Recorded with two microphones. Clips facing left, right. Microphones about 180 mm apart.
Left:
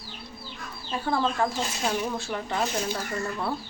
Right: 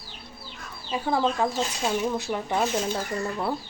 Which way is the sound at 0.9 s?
15° right (ahead or behind).